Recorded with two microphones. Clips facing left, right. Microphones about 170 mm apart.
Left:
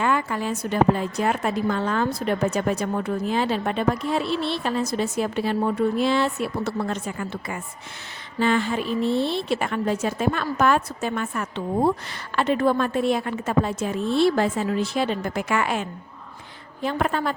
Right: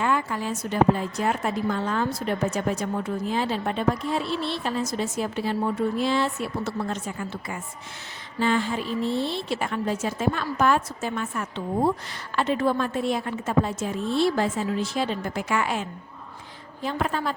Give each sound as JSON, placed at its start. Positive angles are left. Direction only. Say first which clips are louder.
{"t": 0.0, "sound": "a woman's voice", "louder": "left 2 dB", "side_deg": 65}